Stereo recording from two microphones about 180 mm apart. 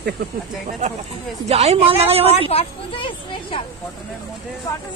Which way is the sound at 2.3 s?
30° left (ahead or behind).